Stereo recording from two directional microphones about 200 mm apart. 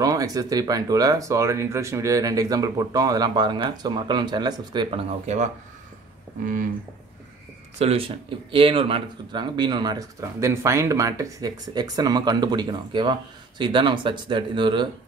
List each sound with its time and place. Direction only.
0.0 s speech: 15° right (ahead or behind)
5.2 s speech: 35° right (ahead or behind)
7.8 s speech: 30° right (ahead or behind)